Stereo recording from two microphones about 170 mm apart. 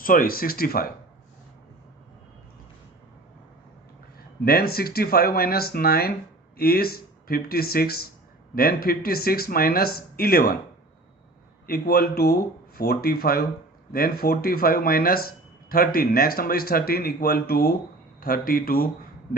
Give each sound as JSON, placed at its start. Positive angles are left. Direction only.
{"t": 0.0, "sound": "speech", "side_deg": 55}
{"t": 4.4, "sound": "speech", "side_deg": 65}
{"t": 11.6, "sound": "speech", "side_deg": 60}